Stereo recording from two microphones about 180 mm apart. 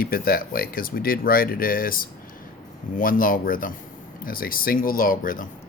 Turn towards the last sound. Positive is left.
turn(degrees=50)  # may be behind; listen again after turning